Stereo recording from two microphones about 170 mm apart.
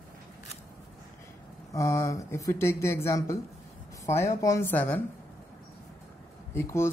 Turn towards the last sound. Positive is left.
turn(degrees=15)  # may be behind; listen again after turning